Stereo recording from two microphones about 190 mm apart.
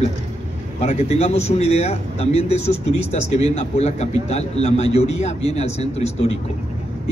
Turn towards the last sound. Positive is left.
turn(degrees=35)  # may be behind; listen again after turning